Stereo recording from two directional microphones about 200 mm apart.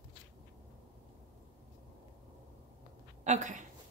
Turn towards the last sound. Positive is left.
turn(degrees=-35)  # may be behind; listen again after turning